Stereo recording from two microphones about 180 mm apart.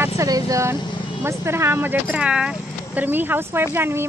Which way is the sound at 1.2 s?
15° right (ahead or behind).